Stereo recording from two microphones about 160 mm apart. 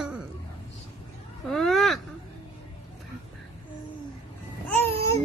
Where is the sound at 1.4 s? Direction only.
Centre (ahead or behind).